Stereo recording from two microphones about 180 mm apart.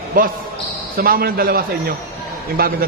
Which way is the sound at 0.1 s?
50° right (ahead or behind).